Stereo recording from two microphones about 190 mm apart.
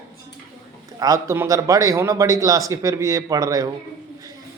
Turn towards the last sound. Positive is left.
turn(degrees=-20)  # may be behind; listen again after turning